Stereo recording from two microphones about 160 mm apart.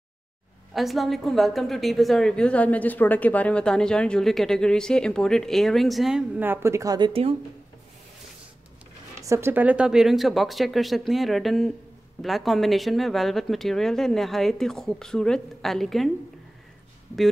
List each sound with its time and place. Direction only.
0.7 s a woman's voice: centre (ahead or behind); by 7.1 s 20° right (ahead or behind)
7.1 s speech: 40° right (ahead or behind)
9.2 s a woman's voice: 15° right (ahead or behind); by 16.1 s centre (ahead or behind)